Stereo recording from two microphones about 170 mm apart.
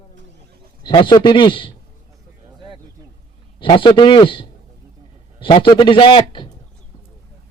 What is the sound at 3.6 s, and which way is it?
A man's voice, 30° left (ahead or behind).